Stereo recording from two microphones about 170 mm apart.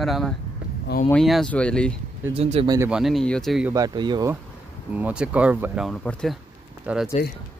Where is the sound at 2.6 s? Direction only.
20° right (ahead or behind).